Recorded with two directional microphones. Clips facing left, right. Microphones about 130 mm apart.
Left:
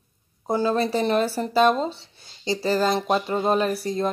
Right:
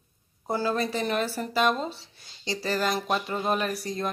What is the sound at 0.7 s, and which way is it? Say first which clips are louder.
Speech: left 7 dB; 30° left (ahead or behind).